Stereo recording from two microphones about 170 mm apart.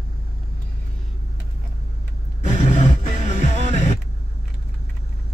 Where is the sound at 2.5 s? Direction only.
45° left (ahead or behind).